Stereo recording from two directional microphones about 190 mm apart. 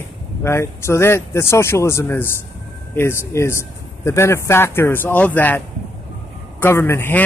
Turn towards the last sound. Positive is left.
turn(degrees=10)  # may be behind; listen again after turning